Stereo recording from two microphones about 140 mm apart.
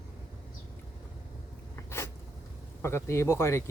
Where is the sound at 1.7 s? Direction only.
20° left (ahead or behind).